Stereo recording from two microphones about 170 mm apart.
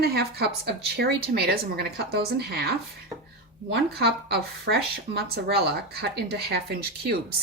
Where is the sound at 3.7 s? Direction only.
70° right (ahead or behind).